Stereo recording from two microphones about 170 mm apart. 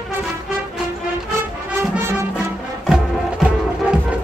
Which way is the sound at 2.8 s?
5° right (ahead or behind).